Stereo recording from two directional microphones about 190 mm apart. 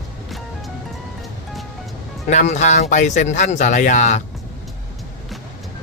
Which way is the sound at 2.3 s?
40° left (ahead or behind).